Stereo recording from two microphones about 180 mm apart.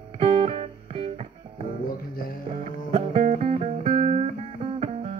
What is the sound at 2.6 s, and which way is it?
Music, 35° right (ahead or behind).